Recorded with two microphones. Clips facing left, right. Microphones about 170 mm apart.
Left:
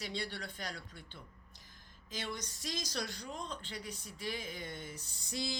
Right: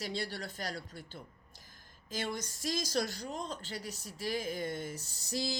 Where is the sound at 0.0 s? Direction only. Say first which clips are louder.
Right 3 dB; 40° right (ahead or behind).